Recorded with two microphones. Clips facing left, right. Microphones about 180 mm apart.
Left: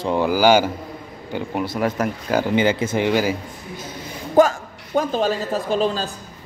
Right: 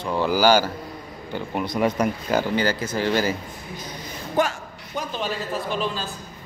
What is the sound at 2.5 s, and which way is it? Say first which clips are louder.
Speech: left 5 dB; 20° left (ahead or behind).